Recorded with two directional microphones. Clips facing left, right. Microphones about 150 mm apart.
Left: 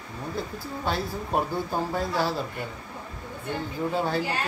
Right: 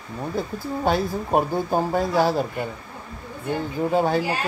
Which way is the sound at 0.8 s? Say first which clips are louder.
Right 7 dB; 50° right (ahead or behind).